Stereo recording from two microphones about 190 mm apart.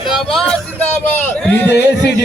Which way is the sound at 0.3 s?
Centre (ahead or behind).